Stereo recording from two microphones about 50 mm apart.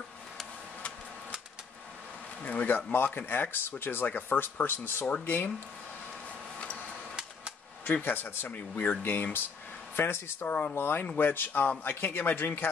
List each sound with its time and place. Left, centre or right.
2.4 s speech: left
2.9 s speech: left
7.8 s speech: left
10.4 s speech: left
10.7 s speech: left